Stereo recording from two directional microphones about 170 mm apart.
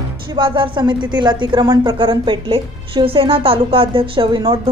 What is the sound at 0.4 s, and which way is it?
A woman's voice, 30° right (ahead or behind).